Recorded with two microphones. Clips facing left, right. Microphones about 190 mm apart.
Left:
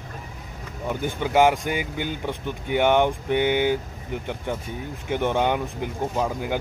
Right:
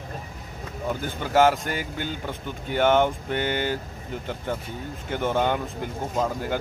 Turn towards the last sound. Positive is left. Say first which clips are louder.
# left 1 dB
turn(degrees=10)  # may be behind; listen again after turning